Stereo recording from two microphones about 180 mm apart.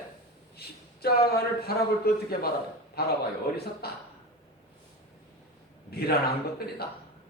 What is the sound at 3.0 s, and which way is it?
Speech, 60° left (ahead or behind).